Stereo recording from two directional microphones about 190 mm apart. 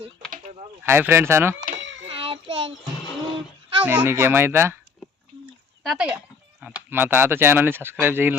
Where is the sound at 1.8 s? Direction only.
75° right (ahead or behind).